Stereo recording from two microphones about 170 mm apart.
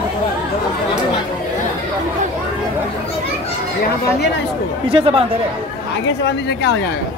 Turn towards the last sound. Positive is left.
turn(degrees=85)